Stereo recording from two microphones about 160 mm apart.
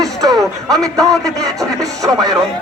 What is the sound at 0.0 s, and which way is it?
Music, 20° right (ahead or behind).